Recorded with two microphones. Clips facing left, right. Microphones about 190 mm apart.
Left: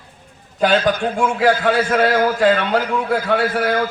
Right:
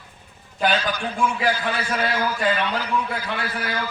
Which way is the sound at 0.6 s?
50° left (ahead or behind).